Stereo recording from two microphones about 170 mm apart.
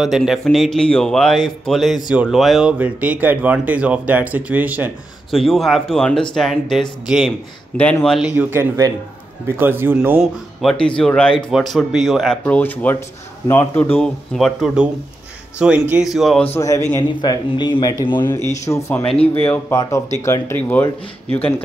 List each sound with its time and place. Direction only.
0.0 s speech: centre (ahead or behind)
5.4 s speech: centre (ahead or behind)
8.4 s speech: 15° right (ahead or behind)
16.5 s speech: 15° left (ahead or behind)